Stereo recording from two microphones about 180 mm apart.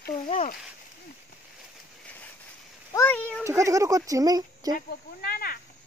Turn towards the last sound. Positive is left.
turn(degrees=55)  # may be behind; listen again after turning